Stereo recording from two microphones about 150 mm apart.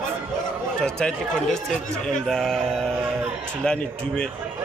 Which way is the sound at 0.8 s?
5° left (ahead or behind).